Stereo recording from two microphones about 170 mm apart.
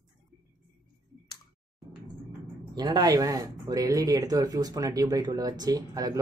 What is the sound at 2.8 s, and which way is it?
Speech, 25° right (ahead or behind).